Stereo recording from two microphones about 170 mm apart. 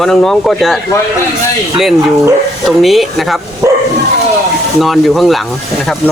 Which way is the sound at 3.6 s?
15° right (ahead or behind).